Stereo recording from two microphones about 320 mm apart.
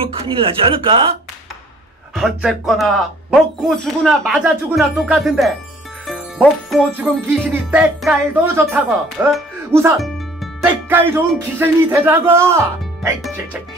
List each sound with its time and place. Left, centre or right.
0.1 s music: centre
2.1 s speech: centre
6.0 s music: centre